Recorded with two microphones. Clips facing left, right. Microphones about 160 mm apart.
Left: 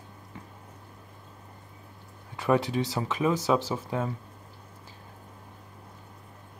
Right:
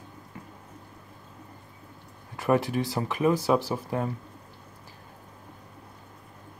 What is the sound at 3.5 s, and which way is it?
Speech, 15° right (ahead or behind).